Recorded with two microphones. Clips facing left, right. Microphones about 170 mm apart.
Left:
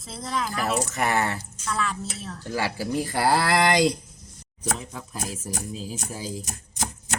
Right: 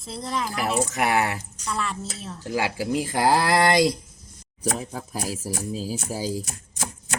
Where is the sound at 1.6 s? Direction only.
Centre (ahead or behind).